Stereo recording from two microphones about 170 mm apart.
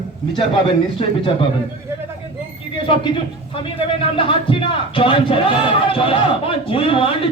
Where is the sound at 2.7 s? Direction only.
30° left (ahead or behind).